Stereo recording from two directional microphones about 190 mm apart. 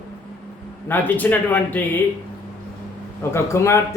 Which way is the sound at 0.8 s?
10° left (ahead or behind).